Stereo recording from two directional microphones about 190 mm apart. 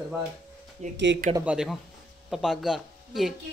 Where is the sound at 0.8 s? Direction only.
40° right (ahead or behind).